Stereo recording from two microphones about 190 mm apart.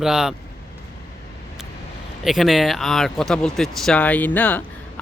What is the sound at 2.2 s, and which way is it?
Speech, centre (ahead or behind).